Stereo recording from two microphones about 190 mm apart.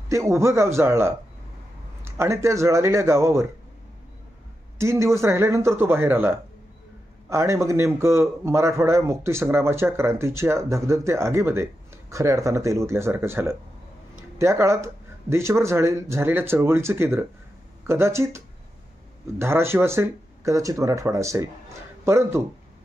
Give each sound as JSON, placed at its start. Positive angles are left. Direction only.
{"t": 0.1, "sound": "a man's voice", "side_deg": -15}
{"t": 2.1, "sound": "a man's voice", "side_deg": -15}
{"t": 4.7, "sound": "a man's voice", "side_deg": -15}